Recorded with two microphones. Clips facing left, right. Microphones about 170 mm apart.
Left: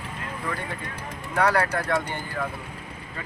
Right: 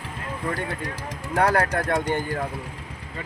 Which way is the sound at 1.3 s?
45° right (ahead or behind).